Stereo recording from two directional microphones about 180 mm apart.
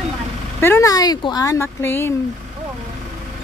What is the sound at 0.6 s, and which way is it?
Speech, 15° left (ahead or behind).